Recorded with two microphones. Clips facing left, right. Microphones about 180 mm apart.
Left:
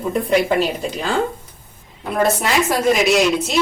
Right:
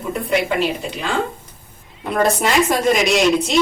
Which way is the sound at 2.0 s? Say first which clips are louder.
Right 1 dB; 5° left (ahead or behind).